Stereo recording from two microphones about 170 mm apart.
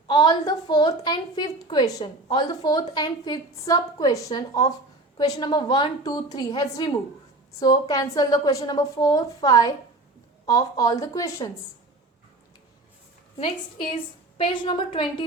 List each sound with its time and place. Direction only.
0.1 s a woman's voice: 25° left (ahead or behind)
13.4 s a woman's voice: 30° left (ahead or behind)